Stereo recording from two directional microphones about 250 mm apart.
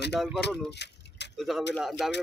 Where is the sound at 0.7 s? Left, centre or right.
Left.